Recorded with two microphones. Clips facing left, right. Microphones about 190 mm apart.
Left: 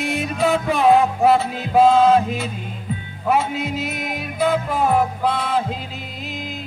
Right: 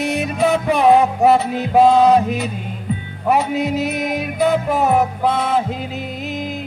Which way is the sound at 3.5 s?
40° right (ahead or behind).